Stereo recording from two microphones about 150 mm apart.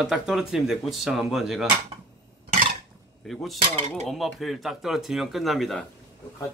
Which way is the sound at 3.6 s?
45° right (ahead or behind).